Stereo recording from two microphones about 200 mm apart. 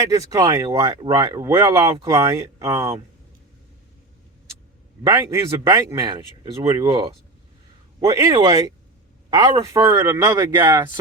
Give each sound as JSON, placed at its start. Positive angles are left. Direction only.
{"t": 0.0, "sound": "speech", "side_deg": -15}
{"t": 5.0, "sound": "speech", "side_deg": -15}